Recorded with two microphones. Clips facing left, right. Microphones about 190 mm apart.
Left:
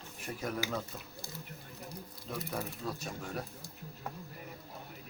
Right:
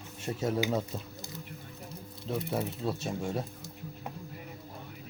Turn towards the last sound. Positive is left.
turn(degrees=-25)  # may be behind; listen again after turning